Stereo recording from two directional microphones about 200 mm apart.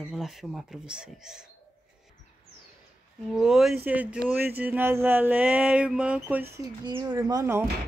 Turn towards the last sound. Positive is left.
turn(degrees=-15)  # may be behind; listen again after turning